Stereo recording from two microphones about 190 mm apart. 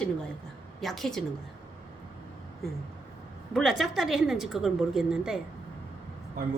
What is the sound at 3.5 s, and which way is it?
A woman's voice, centre (ahead or behind).